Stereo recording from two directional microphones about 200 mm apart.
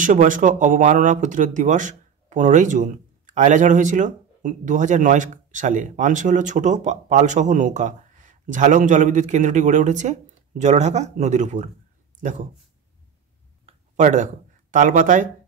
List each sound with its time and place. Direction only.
0.0 s speech: 40° right (ahead or behind)
13.7 s speech: 40° right (ahead or behind)